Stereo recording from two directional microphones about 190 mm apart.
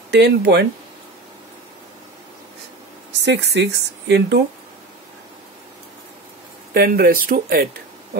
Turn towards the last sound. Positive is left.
turn(degrees=-50)  # may be behind; listen again after turning